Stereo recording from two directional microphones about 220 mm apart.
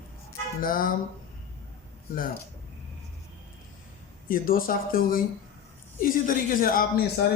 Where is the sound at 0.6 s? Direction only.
40° left (ahead or behind).